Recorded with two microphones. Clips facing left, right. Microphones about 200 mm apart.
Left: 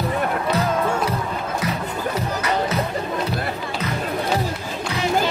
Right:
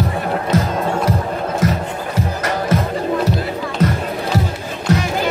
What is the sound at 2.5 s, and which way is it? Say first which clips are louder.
Music: right 4 dB; 50° right (ahead or behind).